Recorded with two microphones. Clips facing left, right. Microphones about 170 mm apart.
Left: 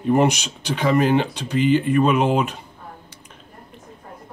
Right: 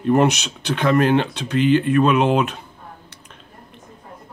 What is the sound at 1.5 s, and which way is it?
Speech, 60° right (ahead or behind).